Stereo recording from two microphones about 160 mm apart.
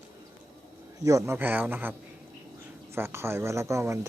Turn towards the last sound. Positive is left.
turn(degrees=-20)  # may be behind; listen again after turning